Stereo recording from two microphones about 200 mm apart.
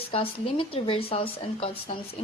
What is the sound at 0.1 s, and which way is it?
A woman's voice, 25° left (ahead or behind).